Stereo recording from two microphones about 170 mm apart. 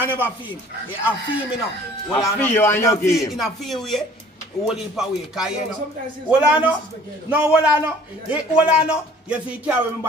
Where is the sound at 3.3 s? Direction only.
Centre (ahead or behind).